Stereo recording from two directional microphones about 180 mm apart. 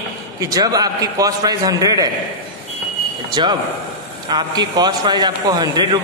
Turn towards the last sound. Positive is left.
turn(degrees=-25)  # may be behind; listen again after turning